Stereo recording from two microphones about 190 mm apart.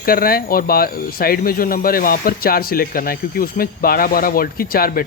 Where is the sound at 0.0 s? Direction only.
50° left (ahead or behind).